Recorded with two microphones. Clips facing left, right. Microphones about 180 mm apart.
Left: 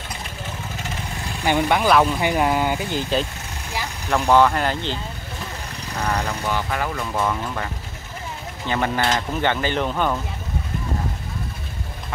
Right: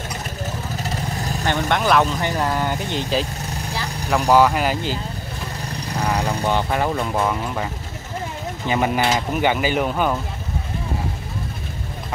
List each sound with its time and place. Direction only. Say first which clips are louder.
0.8 s vehicle: right 5 dB; 40° right (ahead or behind)
1.4 s speech: left 2 dB; 10° left (ahead or behind); by 5.0 s 10° right (ahead or behind)
6.0 s vehicle: right 2 dB; 15° right (ahead or behind)
6.4 s speech: right 4 dB; 25° right (ahead or behind)
8.6 s speech: right 2 dB; 15° right (ahead or behind)